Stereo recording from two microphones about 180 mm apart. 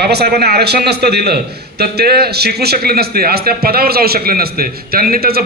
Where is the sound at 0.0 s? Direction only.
65° right (ahead or behind).